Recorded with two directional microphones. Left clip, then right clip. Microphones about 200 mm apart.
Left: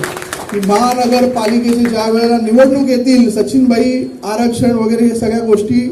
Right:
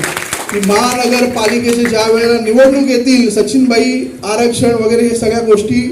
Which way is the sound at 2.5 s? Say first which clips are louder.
Right 1 dB; 60° left (ahead or behind).